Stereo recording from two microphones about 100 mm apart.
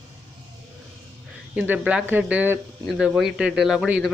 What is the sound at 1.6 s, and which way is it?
Speech, 20° right (ahead or behind).